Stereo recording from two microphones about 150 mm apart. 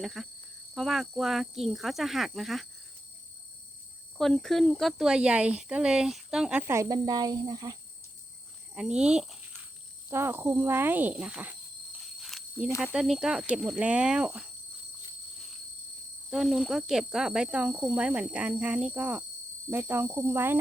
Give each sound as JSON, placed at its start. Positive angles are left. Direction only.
{"t": 0.0, "sound": "speech", "side_deg": 0}
{"t": 4.2, "sound": "speech", "side_deg": 5}
{"t": 6.7, "sound": "cricket", "side_deg": -20}
{"t": 8.7, "sound": "speech", "side_deg": -5}
{"t": 10.1, "sound": "speech", "side_deg": -15}
{"t": 12.2, "sound": "cricket", "side_deg": -5}
{"t": 12.8, "sound": "speech", "side_deg": -5}
{"t": 16.3, "sound": "speech", "side_deg": 0}